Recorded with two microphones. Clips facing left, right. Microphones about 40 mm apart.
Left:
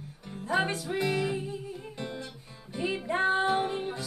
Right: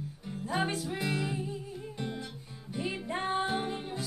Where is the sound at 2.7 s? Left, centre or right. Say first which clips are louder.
Left 4 dB; centre.